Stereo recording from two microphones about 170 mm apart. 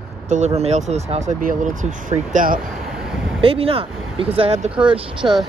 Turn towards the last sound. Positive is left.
turn(degrees=-30)  # may be behind; listen again after turning